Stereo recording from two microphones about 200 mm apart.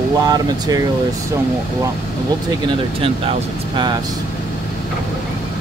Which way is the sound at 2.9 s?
30° right (ahead or behind).